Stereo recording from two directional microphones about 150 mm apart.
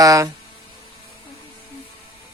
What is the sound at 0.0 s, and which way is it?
Speech, 20° right (ahead or behind).